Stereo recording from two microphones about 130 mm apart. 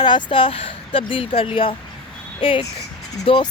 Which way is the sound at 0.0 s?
35° left (ahead or behind).